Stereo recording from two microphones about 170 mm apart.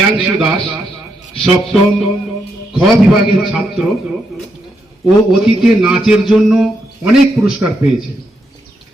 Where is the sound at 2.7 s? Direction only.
Centre (ahead or behind).